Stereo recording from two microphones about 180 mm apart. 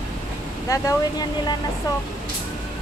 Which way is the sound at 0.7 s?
15° left (ahead or behind).